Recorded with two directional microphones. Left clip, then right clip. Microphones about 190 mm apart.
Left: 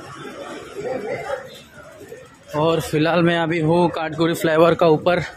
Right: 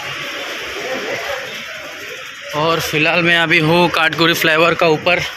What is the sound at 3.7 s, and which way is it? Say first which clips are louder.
Speech: right 6 dB; 10° left (ahead or behind).